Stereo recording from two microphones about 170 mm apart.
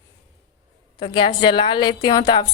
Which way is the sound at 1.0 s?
30° left (ahead or behind).